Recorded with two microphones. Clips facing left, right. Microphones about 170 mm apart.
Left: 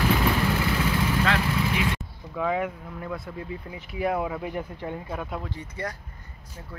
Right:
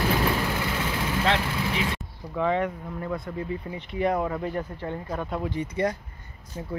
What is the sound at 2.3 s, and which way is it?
Speech, 5° left (ahead or behind).